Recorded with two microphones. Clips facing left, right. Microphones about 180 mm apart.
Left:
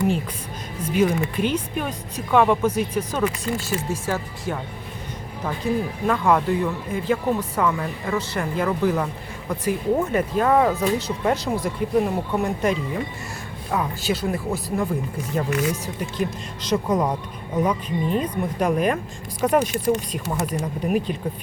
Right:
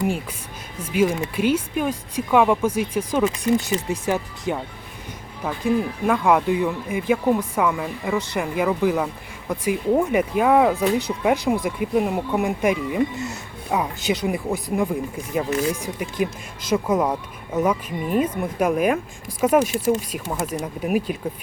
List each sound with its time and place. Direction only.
0.8 s speech: 10° right (ahead or behind)
5.6 s speech: 10° right (ahead or behind)
15.4 s speech: 35° right (ahead or behind)
15.7 s speech: 10° right (ahead or behind)